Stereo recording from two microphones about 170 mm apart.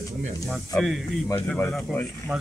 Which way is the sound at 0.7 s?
Centre (ahead or behind).